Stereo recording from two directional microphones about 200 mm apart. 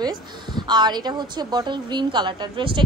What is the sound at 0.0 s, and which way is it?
Speech, 20° right (ahead or behind).